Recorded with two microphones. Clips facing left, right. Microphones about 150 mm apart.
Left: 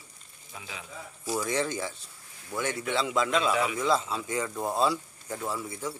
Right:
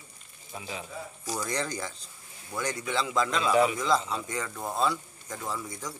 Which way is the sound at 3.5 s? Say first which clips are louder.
Right 4 dB; 30° right (ahead or behind).